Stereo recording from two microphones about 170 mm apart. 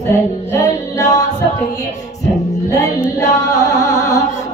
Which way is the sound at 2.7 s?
20° left (ahead or behind).